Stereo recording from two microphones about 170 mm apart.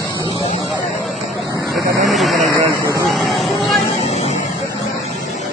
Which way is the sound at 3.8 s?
40° left (ahead or behind).